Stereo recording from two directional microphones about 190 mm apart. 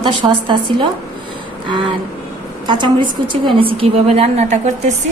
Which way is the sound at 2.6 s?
25° right (ahead or behind).